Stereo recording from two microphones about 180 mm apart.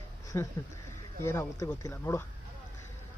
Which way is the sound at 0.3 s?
15° left (ahead or behind).